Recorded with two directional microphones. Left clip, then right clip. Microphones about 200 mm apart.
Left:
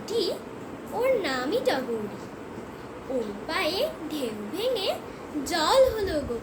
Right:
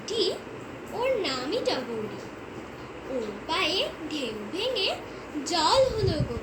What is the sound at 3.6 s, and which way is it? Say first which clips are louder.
A woman's voice: left 1 dB; 20° left (ahead or behind).